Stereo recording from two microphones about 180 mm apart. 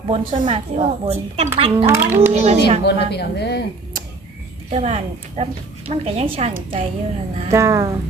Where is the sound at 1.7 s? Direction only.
15° right (ahead or behind).